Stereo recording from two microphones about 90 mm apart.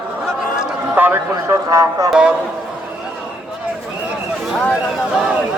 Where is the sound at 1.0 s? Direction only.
20° right (ahead or behind).